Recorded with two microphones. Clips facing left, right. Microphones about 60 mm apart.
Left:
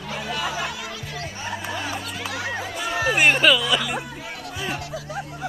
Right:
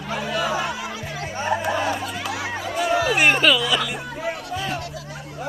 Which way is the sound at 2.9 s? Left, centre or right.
Left.